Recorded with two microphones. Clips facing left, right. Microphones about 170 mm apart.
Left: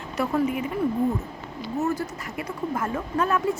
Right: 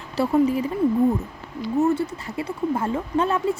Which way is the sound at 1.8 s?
30° right (ahead or behind).